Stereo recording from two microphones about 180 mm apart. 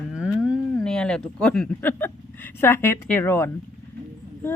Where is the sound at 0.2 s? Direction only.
Centre (ahead or behind).